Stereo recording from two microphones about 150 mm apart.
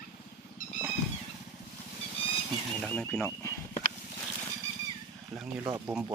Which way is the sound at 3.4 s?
15° left (ahead or behind).